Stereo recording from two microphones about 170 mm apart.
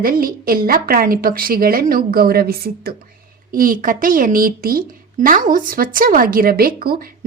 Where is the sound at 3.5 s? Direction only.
55° right (ahead or behind).